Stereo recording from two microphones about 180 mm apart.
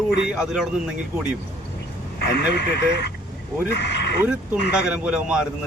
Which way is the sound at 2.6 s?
70° left (ahead or behind).